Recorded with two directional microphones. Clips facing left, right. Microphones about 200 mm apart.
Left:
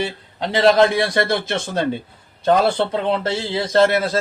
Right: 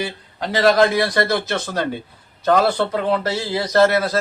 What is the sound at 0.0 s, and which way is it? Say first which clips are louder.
A man's voice: left 2 dB; 25° left (ahead or behind).